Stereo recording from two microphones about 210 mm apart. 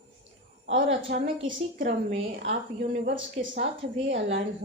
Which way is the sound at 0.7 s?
60° right (ahead or behind).